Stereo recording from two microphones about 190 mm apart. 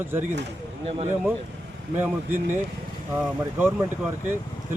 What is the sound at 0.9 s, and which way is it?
Speech, 35° right (ahead or behind).